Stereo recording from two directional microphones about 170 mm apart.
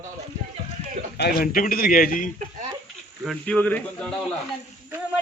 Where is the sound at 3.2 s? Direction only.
5° left (ahead or behind).